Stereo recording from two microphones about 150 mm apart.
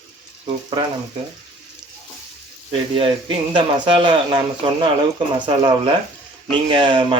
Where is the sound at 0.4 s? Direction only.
30° right (ahead or behind).